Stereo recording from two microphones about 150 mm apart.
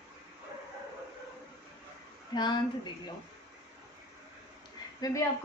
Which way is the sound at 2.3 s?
30° left (ahead or behind).